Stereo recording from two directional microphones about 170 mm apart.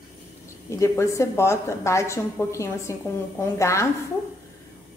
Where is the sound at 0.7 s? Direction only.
15° left (ahead or behind).